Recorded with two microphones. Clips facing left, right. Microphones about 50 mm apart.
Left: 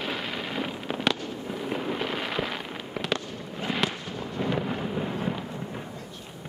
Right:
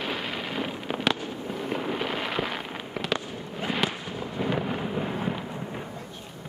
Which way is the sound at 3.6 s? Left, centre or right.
Centre.